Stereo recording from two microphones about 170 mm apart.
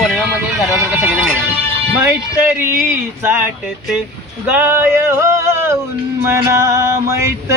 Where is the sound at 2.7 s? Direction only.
15° right (ahead or behind).